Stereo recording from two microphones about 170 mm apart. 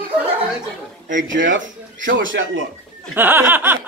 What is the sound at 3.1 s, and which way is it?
Snicker, 10° right (ahead or behind).